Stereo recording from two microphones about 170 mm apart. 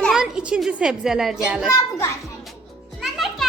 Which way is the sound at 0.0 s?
Centre (ahead or behind).